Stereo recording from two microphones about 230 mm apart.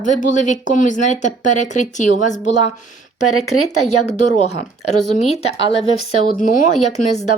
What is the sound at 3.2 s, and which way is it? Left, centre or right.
Speech, left.